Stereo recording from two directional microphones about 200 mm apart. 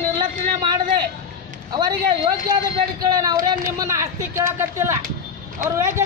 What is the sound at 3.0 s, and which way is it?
Speech, 20° right (ahead or behind).